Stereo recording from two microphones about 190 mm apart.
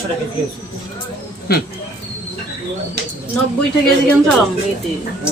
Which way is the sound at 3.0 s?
60° right (ahead or behind).